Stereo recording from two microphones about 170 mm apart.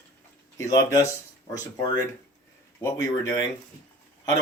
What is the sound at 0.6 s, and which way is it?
A man's voice, 20° left (ahead or behind).